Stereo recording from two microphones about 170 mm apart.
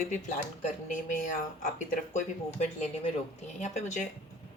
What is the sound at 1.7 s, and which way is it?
Speech, 45° left (ahead or behind).